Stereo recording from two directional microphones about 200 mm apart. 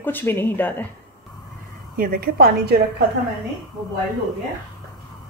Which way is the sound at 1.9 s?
45° right (ahead or behind).